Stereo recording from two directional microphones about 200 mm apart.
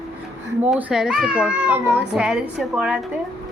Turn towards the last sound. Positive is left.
turn(degrees=-5)  # may be behind; listen again after turning